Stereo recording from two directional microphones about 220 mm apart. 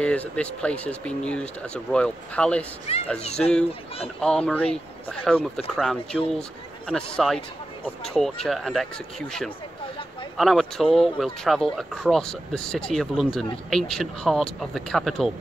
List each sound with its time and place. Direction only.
0.0 s speech: 5° left (ahead or behind)
2.9 s speech: 25° left (ahead or behind)
3.3 s speech: 5° left (ahead or behind)
10.3 s speech: centre (ahead or behind)